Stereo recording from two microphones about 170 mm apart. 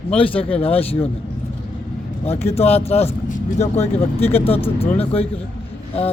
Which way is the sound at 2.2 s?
35° left (ahead or behind).